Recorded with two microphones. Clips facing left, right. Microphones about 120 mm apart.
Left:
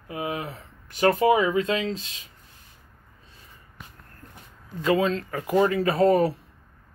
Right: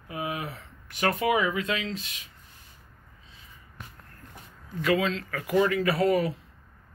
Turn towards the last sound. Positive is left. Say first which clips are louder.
# left 4 dB
turn(degrees=35)  # may be behind; listen again after turning